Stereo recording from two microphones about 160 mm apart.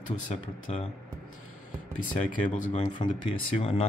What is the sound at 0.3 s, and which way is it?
Speech, 45° left (ahead or behind).